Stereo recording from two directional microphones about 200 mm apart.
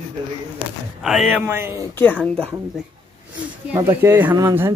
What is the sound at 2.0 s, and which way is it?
Speech, 5° left (ahead or behind).